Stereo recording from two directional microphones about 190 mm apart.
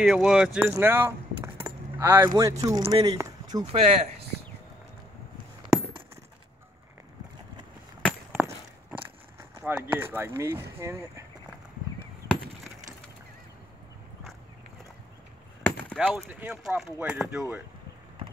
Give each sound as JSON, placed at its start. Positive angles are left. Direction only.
{"t": 0.0, "sound": "speech", "side_deg": -5}
{"t": 3.6, "sound": "speech", "side_deg": -30}
{"t": 8.0, "sound": "a sound", "side_deg": 0}
{"t": 9.6, "sound": "speech", "side_deg": -10}
{"t": 16.0, "sound": "speech", "side_deg": -5}